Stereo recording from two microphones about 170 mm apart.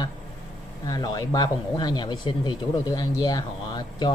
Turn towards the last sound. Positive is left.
turn(degrees=25)  # may be behind; listen again after turning